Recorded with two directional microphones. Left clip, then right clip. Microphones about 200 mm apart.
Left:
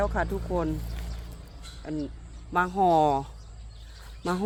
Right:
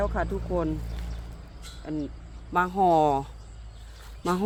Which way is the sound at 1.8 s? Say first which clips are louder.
Right 1 dB; 5° left (ahead or behind).